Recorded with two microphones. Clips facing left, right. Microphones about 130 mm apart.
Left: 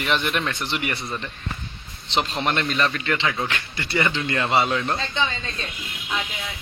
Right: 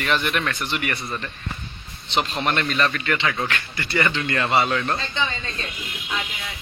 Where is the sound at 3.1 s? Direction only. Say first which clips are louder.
Even; 5° left (ahead or behind).